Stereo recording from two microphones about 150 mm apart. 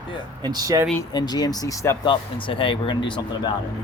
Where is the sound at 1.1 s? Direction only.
25° left (ahead or behind).